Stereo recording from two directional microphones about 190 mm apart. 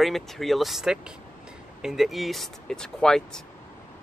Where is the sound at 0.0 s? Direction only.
Centre (ahead or behind).